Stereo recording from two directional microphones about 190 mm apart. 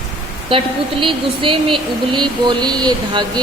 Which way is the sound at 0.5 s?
30° right (ahead or behind).